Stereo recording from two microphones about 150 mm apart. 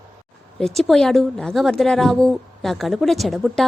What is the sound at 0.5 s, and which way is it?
A woman's voice, centre (ahead or behind).